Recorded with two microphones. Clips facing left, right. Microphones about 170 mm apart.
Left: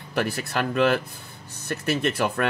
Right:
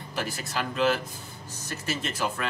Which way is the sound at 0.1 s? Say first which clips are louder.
Left 6 dB; 60° left (ahead or behind).